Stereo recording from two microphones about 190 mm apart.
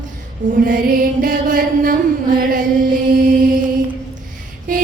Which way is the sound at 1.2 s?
45° right (ahead or behind).